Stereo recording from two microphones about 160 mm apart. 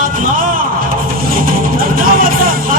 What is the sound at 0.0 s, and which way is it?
Music, 60° right (ahead or behind).